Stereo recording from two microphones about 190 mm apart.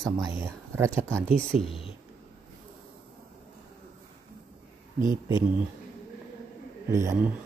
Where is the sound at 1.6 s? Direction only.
Centre (ahead or behind).